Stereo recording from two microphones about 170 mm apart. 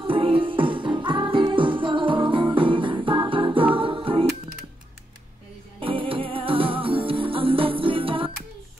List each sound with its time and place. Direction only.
0.0 s music: 30° right (ahead or behind)
5.8 s music: 30° right (ahead or behind)